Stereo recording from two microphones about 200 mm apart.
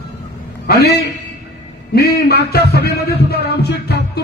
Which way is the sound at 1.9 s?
50° left (ahead or behind).